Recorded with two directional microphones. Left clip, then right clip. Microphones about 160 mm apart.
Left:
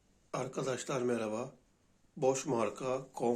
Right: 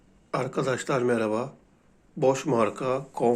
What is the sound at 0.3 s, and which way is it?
Speech, 10° left (ahead or behind).